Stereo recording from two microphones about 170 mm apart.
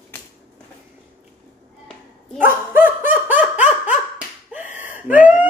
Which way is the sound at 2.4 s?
10° right (ahead or behind).